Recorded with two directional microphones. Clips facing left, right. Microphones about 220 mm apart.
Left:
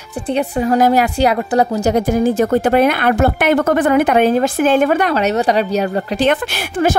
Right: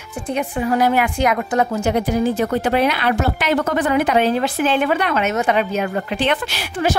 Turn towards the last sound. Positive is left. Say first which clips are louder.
# left 4 dB
turn(degrees=50)  # may be behind; listen again after turning